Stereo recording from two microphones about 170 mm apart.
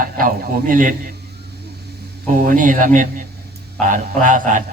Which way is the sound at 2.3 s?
50° right (ahead or behind).